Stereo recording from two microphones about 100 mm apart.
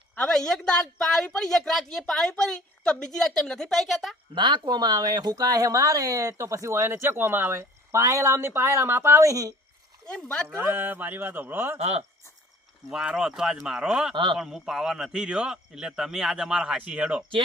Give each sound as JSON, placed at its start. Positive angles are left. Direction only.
{"t": 0.2, "sound": "speech", "side_deg": 5}
{"t": 4.4, "sound": "speech", "side_deg": -50}
{"t": 10.1, "sound": "speech", "side_deg": 5}
{"t": 10.7, "sound": "speech", "side_deg": -20}
{"t": 11.8, "sound": "speech", "side_deg": -90}
{"t": 12.9, "sound": "speech", "side_deg": -5}